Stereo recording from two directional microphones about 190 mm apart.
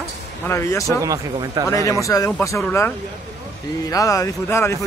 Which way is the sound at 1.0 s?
15° right (ahead or behind).